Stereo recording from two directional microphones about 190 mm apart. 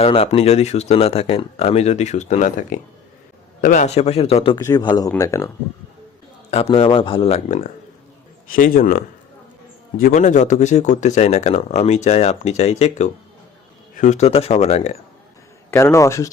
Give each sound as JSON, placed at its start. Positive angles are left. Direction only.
{"t": 0.0, "sound": "speech", "side_deg": 30}
{"t": 4.6, "sound": "speech", "side_deg": 20}
{"t": 6.5, "sound": "speech", "side_deg": 35}
{"t": 15.7, "sound": "speech", "side_deg": 15}